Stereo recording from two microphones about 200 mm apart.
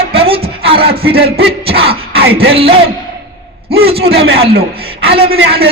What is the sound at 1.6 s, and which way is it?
Speech, 30° right (ahead or behind).